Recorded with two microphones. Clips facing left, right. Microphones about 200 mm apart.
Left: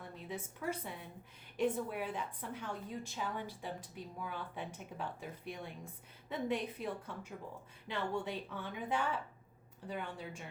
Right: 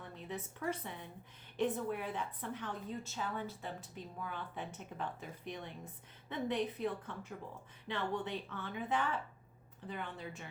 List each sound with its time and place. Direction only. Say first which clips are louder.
0.0 s a woman's voice: even; 10° left (ahead or behind)